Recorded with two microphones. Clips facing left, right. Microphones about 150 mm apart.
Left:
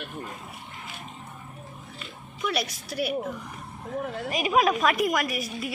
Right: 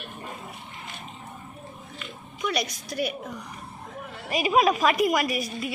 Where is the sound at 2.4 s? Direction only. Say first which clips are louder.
Right 1 dB; 5° left (ahead or behind).